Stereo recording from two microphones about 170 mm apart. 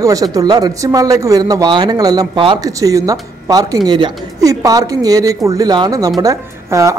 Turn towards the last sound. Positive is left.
turn(degrees=-20)  # may be behind; listen again after turning